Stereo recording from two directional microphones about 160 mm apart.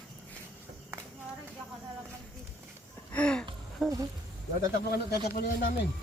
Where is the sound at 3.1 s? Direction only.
5° left (ahead or behind).